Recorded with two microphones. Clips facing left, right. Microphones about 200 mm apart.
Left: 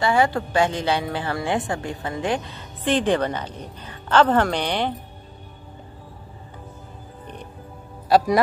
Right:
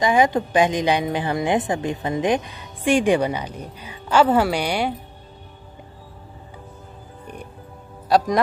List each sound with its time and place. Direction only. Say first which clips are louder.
0.0 s speech: right 2 dB; 15° right (ahead or behind)
8.1 s speech: left 1 dB; centre (ahead or behind)